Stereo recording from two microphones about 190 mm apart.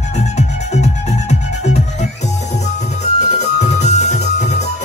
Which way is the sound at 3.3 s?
35° left (ahead or behind).